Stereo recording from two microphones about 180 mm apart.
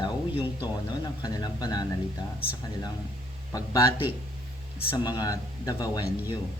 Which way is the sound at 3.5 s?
20° left (ahead or behind).